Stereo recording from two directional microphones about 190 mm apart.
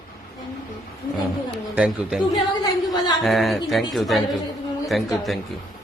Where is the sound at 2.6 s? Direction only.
20° left (ahead or behind).